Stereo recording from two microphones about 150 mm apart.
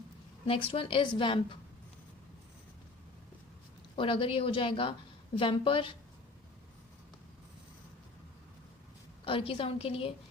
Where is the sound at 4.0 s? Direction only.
35° left (ahead or behind).